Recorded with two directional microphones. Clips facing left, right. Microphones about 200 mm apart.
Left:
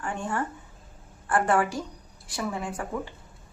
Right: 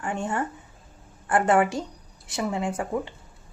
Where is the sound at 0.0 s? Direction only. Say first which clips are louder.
Right 2 dB; 20° right (ahead or behind).